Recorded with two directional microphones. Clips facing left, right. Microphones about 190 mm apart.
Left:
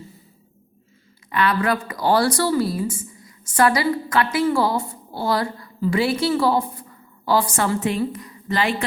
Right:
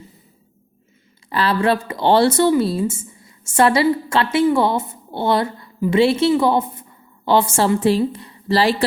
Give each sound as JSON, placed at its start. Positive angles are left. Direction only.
{"t": 1.3, "sound": "a woman's voice", "side_deg": -30}